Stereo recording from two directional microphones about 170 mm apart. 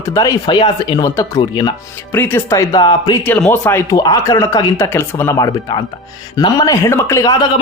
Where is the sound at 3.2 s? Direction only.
10° left (ahead or behind).